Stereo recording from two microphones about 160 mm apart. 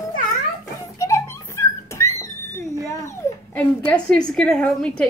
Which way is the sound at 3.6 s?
5° left (ahead or behind).